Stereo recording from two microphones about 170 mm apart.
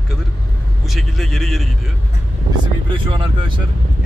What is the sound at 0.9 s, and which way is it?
Speech, centre (ahead or behind).